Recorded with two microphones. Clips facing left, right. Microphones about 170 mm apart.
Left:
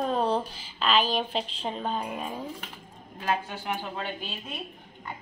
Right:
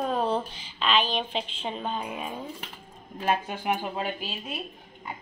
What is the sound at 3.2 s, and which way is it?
Speech, 15° right (ahead or behind).